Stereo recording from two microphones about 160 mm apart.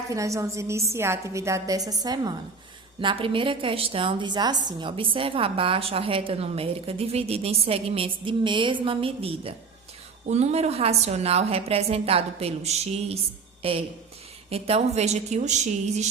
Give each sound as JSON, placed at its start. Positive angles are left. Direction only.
{"t": 0.1, "sound": "a woman's voice", "side_deg": -20}